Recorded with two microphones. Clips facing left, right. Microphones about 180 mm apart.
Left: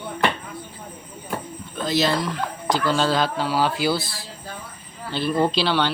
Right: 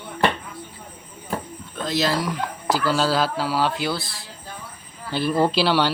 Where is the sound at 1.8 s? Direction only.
Centre (ahead or behind).